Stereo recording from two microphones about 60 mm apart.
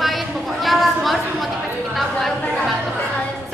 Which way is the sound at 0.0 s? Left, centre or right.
Centre.